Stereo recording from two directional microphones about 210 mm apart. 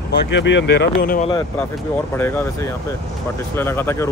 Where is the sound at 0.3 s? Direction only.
60° left (ahead or behind).